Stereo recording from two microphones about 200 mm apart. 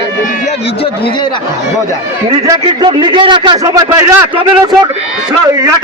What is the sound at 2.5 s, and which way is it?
A man's voice, 25° right (ahead or behind).